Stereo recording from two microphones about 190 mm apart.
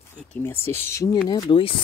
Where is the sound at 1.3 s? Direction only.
25° left (ahead or behind).